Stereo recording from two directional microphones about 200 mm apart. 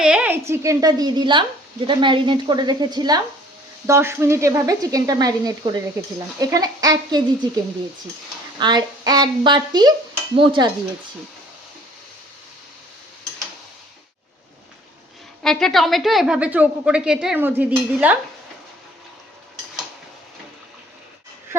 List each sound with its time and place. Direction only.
0.0 s a woman's voice: 5° right (ahead or behind); by 10.7 s 25° right (ahead or behind)
15.4 s a woman's voice: centre (ahead or behind)